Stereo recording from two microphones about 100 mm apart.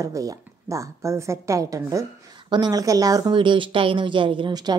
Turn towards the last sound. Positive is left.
turn(degrees=-50)  # may be behind; listen again after turning